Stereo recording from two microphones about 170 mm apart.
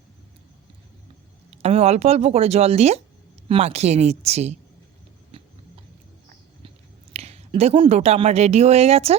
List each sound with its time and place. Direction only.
1.5 s speech: 40° right (ahead or behind)
7.1 s speech: 40° right (ahead or behind)